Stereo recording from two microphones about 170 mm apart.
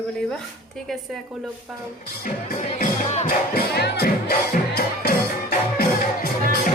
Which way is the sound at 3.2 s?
65° left (ahead or behind).